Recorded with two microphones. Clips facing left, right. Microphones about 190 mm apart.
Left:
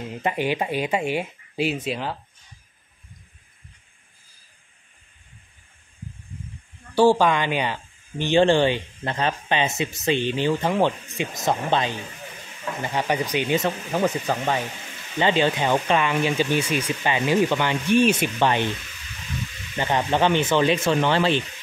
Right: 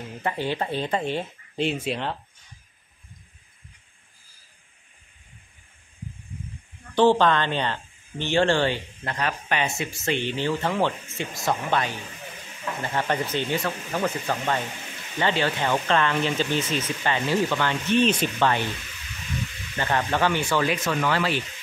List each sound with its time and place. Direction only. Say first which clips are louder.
0.2 s speech: left 3 dB; 15° left (ahead or behind)
7.0 s speech: left 1 dB; 10° left (ahead or behind)
19.8 s speech: left 3 dB; 15° left (ahead or behind)